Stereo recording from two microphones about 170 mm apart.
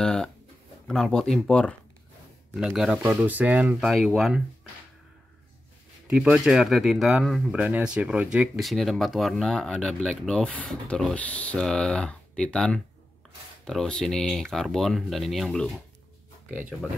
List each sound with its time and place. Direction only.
0.0 s a sound: 5° left (ahead or behind)
0.8 s speech: 5° left (ahead or behind)
2.6 s speech: 5° right (ahead or behind)
6.0 s speech: 5° right (ahead or behind)